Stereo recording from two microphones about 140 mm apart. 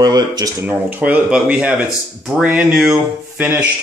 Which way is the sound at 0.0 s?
30° right (ahead or behind).